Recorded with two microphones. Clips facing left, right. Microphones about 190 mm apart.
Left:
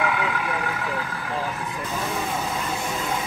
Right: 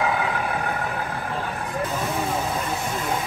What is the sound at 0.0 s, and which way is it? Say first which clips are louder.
Vehicle: right 1 dB; 35° right (ahead or behind).